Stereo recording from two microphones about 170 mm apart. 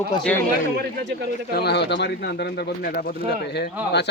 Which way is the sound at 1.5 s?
75° left (ahead or behind).